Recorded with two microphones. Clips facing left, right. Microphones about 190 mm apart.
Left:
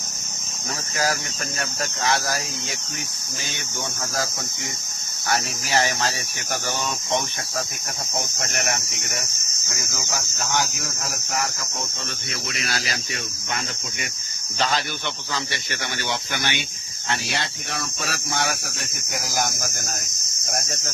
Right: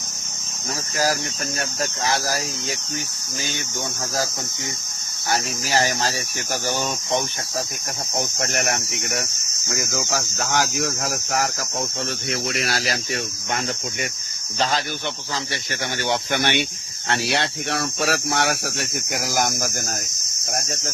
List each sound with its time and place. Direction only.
5.3 s speech: 35° right (ahead or behind)
8.4 s speech: 60° right (ahead or behind)
9.7 s cricket: 85° right
12.7 s speech: 55° right (ahead or behind)
16.0 s speech: 55° right (ahead or behind)
17.1 s speech: 70° right (ahead or behind)
19.1 s speech: 60° right (ahead or behind)
19.5 s cricket: 45° right (ahead or behind)